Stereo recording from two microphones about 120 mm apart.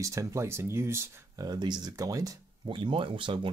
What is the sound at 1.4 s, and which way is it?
Speech, 35° right (ahead or behind).